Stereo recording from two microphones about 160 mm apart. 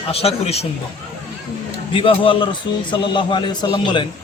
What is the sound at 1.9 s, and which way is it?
A man's voice, 35° left (ahead or behind).